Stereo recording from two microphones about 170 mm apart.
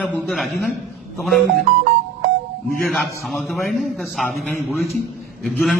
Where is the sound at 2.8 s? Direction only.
Centre (ahead or behind).